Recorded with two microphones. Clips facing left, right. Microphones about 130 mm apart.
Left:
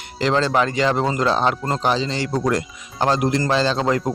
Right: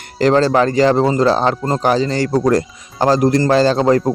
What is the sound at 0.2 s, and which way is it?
Speech, 45° right (ahead or behind).